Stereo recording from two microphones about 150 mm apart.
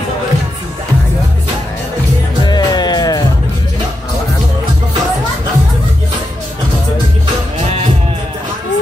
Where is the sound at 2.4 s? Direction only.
30° left (ahead or behind).